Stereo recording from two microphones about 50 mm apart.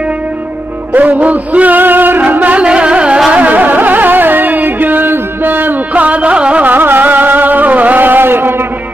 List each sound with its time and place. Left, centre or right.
0.9 s music: right